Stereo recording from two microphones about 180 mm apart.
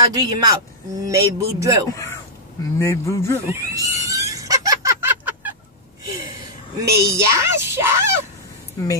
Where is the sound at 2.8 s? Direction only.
15° left (ahead or behind).